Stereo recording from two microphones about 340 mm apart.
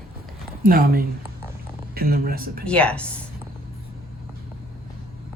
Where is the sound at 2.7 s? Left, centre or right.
Centre.